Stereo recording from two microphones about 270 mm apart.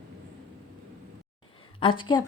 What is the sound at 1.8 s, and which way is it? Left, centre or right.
Speech, centre.